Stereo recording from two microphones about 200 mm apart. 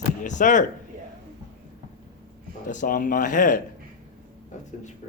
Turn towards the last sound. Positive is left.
turn(degrees=40)  # may be behind; listen again after turning